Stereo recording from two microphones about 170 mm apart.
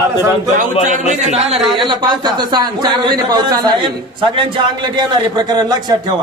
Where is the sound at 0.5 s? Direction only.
45° right (ahead or behind).